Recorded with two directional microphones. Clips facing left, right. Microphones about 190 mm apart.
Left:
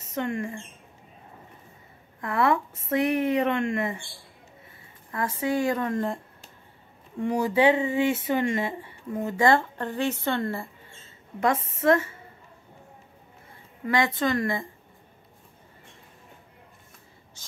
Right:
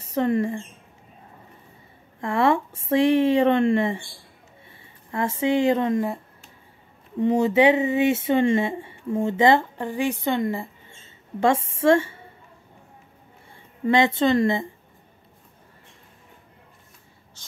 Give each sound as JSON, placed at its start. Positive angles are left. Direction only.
{"t": 0.0, "sound": "speech", "side_deg": -35}
{"t": 2.1, "sound": "speech", "side_deg": -25}
{"t": 5.1, "sound": "speech", "side_deg": -25}
{"t": 5.9, "sound": "speech", "side_deg": -10}
{"t": 7.2, "sound": "speech", "side_deg": -20}
{"t": 11.3, "sound": "speech", "side_deg": -30}
{"t": 13.8, "sound": "speech", "side_deg": -25}
{"t": 17.4, "sound": "a sound", "side_deg": 10}